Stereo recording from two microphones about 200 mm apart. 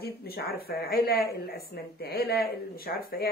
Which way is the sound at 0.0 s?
50° left (ahead or behind).